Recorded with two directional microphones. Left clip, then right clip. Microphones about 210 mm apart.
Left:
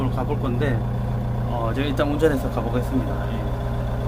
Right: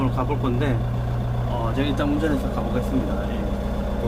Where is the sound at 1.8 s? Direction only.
25° left (ahead or behind).